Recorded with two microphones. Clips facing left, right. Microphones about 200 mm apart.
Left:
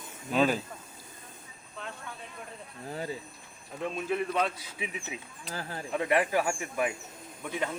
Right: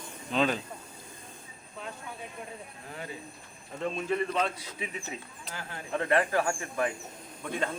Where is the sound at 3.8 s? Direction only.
5° left (ahead or behind).